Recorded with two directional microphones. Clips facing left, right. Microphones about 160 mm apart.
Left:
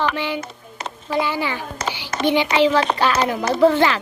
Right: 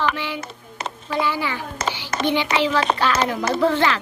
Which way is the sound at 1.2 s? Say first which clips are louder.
Right 1 dB; 20° left (ahead or behind).